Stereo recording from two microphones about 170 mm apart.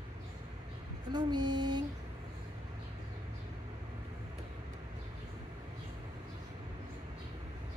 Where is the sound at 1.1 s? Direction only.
25° right (ahead or behind).